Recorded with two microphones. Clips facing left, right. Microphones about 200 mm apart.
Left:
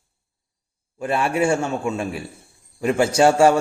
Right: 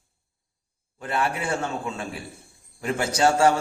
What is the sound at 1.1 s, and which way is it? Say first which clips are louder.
A man's voice: left 6 dB; 25° left (ahead or behind).